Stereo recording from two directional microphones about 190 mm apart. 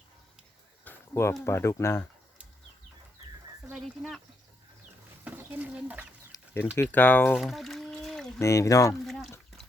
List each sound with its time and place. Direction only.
0.9 s speech: 15° left (ahead or behind)
3.7 s speech: 5° right (ahead or behind)
5.2 s speech: 10° right (ahead or behind)
6.3 s a sound: 10° left (ahead or behind)
6.7 s speech: 10° left (ahead or behind)
8.4 s speech: 15° left (ahead or behind)
9.0 s speech: centre (ahead or behind)